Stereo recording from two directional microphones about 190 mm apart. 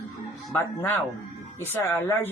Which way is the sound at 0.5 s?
10° left (ahead or behind).